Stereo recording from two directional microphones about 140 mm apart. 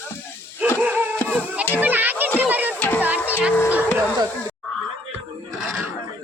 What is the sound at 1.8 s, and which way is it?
Music, 10° right (ahead or behind).